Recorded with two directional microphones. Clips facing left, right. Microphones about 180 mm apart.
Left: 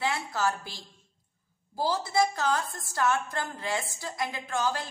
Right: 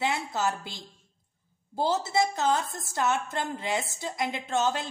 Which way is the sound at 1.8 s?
25° right (ahead or behind).